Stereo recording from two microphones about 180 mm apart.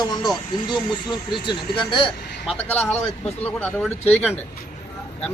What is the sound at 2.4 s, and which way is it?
Speech, 10° left (ahead or behind).